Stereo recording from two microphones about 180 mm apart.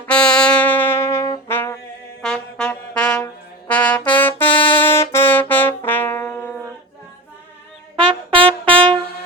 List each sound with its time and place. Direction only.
0.0 s brass instrument: 5° left (ahead or behind)
2.2 s trumpet: 5° left (ahead or behind)
7.9 s brass instrument: 30° right (ahead or behind)